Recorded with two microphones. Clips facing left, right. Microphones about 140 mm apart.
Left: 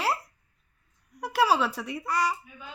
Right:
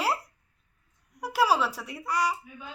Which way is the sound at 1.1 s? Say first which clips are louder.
Left 1 dB; 10° right (ahead or behind).